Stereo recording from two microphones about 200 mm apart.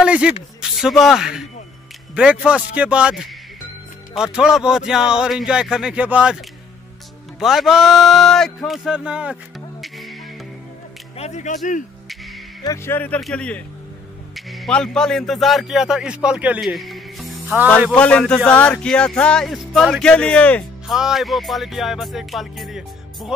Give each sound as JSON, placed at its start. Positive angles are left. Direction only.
{"t": 0.0, "sound": "a sound", "side_deg": -5}
{"t": 0.6, "sound": "speech", "side_deg": 0}
{"t": 7.3, "sound": "speech", "side_deg": 0}
{"t": 11.1, "sound": "speech", "side_deg": 35}
{"t": 12.6, "sound": "speech", "side_deg": 15}